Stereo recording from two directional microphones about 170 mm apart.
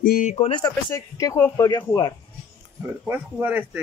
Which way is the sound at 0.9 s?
15° left (ahead or behind).